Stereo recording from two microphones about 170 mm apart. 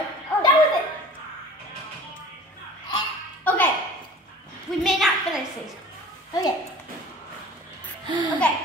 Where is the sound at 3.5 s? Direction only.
10° left (ahead or behind).